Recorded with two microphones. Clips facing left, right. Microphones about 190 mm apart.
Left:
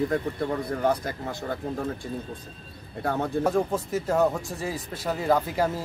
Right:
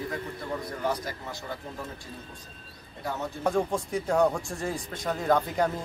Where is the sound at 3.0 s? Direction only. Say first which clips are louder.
Left 6 dB; 55° left (ahead or behind).